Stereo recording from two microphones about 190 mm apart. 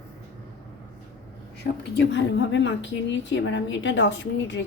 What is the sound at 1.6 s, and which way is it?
A woman's voice, 60° left (ahead or behind).